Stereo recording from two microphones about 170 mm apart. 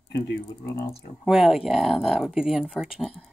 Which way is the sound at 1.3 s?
5° right (ahead or behind).